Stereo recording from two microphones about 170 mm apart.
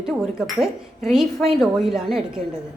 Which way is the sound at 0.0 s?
Centre (ahead or behind).